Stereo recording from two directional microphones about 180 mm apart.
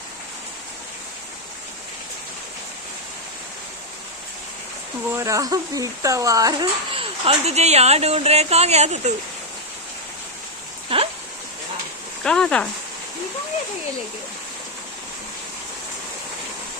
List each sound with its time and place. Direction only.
5.1 s speech: 15° right (ahead or behind); by 9.1 s 40° right (ahead or behind)
10.8 s rain: 30° right (ahead or behind)
12.2 s speech: 5° left (ahead or behind)